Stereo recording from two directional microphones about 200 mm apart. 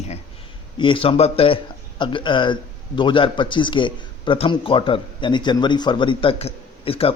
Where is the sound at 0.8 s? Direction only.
25° left (ahead or behind).